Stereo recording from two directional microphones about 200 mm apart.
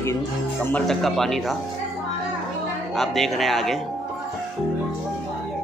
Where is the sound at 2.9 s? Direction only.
Centre (ahead or behind).